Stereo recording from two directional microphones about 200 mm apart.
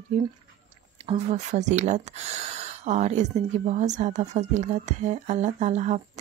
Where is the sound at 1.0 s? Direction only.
35° right (ahead or behind).